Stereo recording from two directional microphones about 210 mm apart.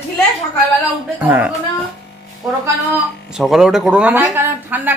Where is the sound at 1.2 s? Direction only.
5° right (ahead or behind).